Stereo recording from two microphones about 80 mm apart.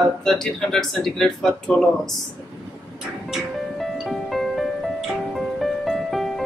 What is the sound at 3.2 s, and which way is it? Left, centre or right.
Music, centre.